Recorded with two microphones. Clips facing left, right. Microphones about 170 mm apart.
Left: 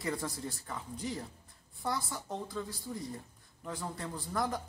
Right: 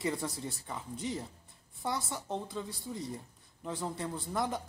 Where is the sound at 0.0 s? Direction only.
20° right (ahead or behind).